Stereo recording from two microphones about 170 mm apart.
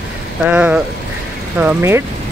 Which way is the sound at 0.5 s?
10° right (ahead or behind).